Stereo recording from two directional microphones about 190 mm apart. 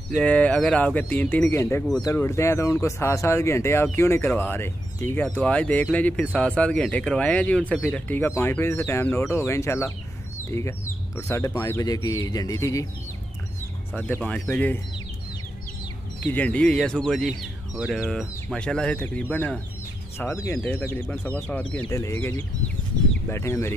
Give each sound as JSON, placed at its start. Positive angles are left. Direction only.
{"t": 0.2, "sound": "speech", "side_deg": 5}
{"t": 11.1, "sound": "speech", "side_deg": 15}
{"t": 13.9, "sound": "speech", "side_deg": 10}
{"t": 16.2, "sound": "speech", "side_deg": 10}